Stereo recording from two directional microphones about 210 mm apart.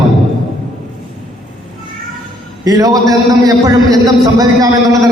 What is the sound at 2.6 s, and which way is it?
A man's voice, 15° right (ahead or behind).